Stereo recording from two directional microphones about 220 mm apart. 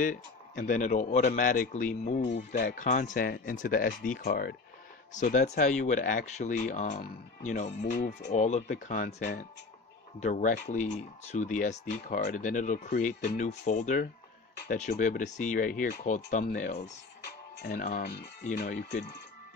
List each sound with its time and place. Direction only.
0.0 s speech: 40° left (ahead or behind)